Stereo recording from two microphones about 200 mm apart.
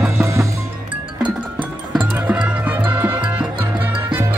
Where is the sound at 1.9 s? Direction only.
20° right (ahead or behind).